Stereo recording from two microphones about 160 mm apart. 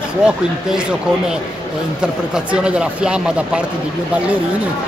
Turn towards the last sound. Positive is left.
turn(degrees=-5)  # may be behind; listen again after turning